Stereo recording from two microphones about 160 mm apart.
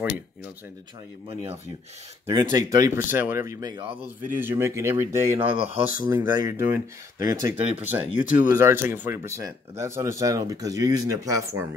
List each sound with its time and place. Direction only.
2.2 s speech: 20° right (ahead or behind)
4.4 s speech: 15° right (ahead or behind)
5.5 s speech: 35° right (ahead or behind)
6.0 s speech: 25° right (ahead or behind)